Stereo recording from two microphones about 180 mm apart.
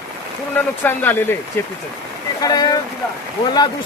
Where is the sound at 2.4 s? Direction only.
20° left (ahead or behind).